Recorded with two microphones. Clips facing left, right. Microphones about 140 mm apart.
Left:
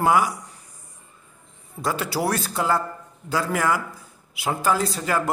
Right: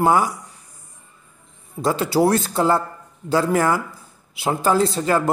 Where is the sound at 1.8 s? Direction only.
25° right (ahead or behind).